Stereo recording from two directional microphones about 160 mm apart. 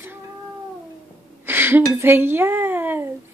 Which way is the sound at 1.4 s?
15° right (ahead or behind).